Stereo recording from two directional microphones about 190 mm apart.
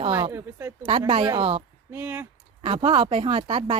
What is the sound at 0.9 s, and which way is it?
Speech, 25° right (ahead or behind).